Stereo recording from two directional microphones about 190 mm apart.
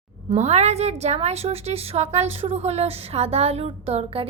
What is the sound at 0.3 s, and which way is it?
A woman's voice, 35° right (ahead or behind).